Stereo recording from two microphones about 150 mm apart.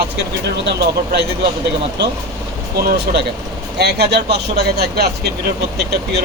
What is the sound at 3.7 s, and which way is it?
Speech, 90° right.